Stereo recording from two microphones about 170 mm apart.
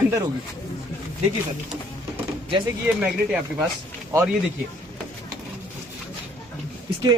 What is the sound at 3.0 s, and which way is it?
Speech, 5° right (ahead or behind).